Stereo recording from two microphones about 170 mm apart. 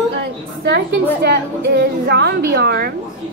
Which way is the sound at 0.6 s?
75° right (ahead or behind).